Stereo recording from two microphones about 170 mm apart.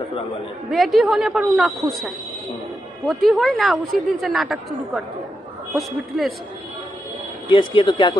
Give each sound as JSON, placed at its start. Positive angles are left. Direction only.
{"t": 0.7, "sound": "a woman's voice", "side_deg": 0}
{"t": 7.4, "sound": "speech", "side_deg": 30}